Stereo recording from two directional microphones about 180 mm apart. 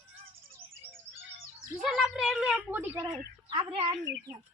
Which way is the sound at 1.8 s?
Centre (ahead or behind).